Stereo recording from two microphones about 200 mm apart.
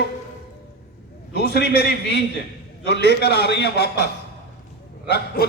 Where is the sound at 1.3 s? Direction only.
55° left (ahead or behind).